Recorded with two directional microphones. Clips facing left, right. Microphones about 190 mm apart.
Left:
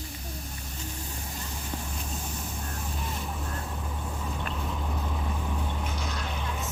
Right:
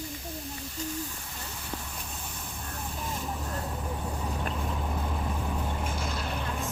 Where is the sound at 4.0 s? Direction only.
15° right (ahead or behind).